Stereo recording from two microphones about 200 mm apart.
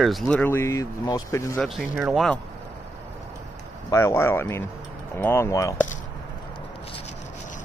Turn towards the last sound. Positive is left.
turn(degrees=15)  # may be behind; listen again after turning